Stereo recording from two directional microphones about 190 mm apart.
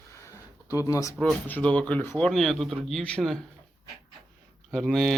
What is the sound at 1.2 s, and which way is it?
Speech, 10° left (ahead or behind).